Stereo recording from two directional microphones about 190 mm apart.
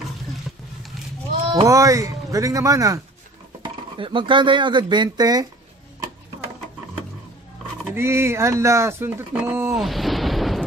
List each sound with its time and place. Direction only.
1.7 s speech: 15° right (ahead or behind)
7.9 s speech: 15° right (ahead or behind)
9.8 s eruption: centre (ahead or behind)